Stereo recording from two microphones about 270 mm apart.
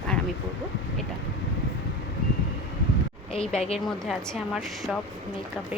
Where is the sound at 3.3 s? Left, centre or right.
Left.